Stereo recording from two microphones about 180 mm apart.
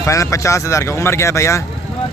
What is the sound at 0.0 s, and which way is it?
A man's voice, 15° left (ahead or behind).